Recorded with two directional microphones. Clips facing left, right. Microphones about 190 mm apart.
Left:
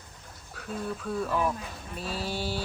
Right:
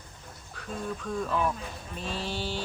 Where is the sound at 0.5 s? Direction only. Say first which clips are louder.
Left 1 dB; 5° left (ahead or behind).